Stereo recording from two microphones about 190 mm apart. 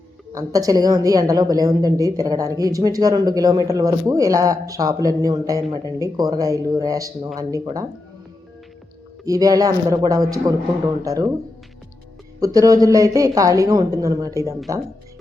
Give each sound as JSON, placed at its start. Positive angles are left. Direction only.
{"t": 0.3, "sound": "a woman's voice", "side_deg": -20}
{"t": 9.2, "sound": "a woman's voice", "side_deg": -20}
{"t": 12.4, "sound": "a woman's voice", "side_deg": -20}